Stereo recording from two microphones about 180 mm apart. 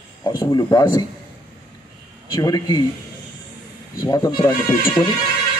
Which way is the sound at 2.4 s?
20° left (ahead or behind).